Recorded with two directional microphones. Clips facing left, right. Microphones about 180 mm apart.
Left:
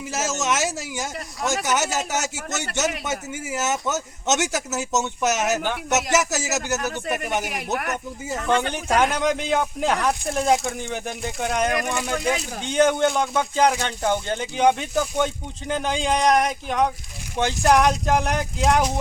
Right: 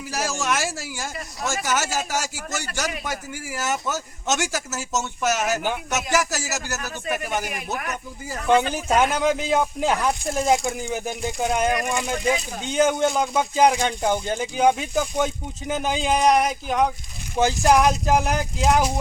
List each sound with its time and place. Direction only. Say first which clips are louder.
0.1 s a man's voice: left 1 dB; 20° left (ahead or behind)
7.5 s a man's voice: left 3 dB; 70° left (ahead or behind)
8.4 s speech: right 3 dB; 10° right (ahead or behind)